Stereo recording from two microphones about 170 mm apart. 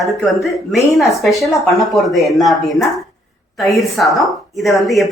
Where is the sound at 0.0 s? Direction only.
Centre (ahead or behind).